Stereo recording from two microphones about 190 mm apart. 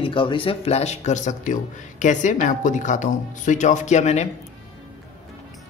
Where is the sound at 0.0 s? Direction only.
25° left (ahead or behind).